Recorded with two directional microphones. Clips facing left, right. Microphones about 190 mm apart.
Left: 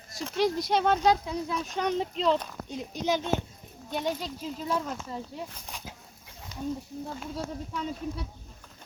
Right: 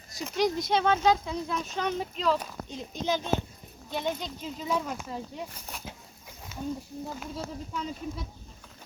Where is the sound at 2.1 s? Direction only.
25° left (ahead or behind).